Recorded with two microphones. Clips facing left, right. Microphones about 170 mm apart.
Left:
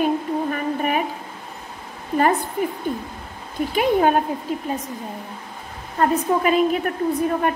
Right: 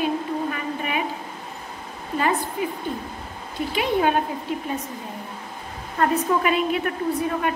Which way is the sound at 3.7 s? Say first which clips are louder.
Left 4 dB; 45° left (ahead or behind).